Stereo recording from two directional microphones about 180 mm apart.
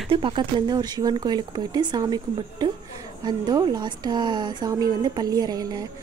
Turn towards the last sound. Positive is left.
turn(degrees=-20)  # may be behind; listen again after turning